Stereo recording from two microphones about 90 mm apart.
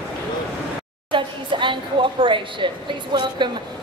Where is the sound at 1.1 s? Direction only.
65° right (ahead or behind).